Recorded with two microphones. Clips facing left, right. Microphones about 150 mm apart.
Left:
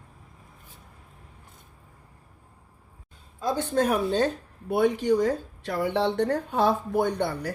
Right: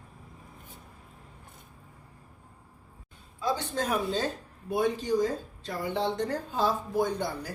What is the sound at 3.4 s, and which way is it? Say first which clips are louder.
Speech: left 5 dB; 45° left (ahead or behind).